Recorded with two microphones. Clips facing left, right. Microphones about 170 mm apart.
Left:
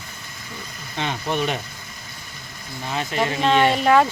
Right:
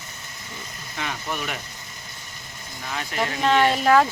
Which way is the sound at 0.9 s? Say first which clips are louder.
Left 6 dB; 25° left (ahead or behind).